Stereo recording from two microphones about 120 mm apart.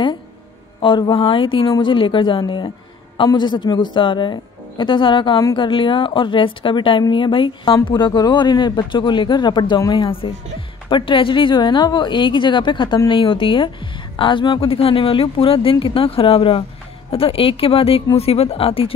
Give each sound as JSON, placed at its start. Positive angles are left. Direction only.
{"t": 0.7, "sound": "a woman's voice", "side_deg": 40}
{"t": 10.0, "sound": "a woman's voice", "side_deg": 50}